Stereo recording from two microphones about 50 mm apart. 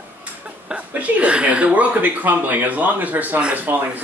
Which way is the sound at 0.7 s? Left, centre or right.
Right.